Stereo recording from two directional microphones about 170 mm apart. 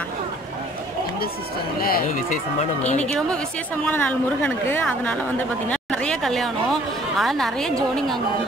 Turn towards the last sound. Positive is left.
turn(degrees=0)  # may be behind; listen again after turning